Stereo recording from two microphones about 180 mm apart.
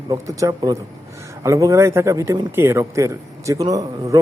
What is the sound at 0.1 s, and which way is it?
A man's voice, 20° right (ahead or behind).